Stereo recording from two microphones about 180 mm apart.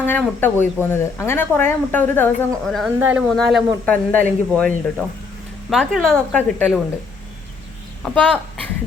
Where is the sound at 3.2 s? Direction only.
Centre (ahead or behind).